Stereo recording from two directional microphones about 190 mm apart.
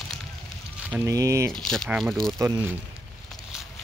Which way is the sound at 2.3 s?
15° right (ahead or behind).